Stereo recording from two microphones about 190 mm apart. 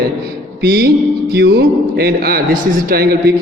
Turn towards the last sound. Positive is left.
turn(degrees=-55)  # may be behind; listen again after turning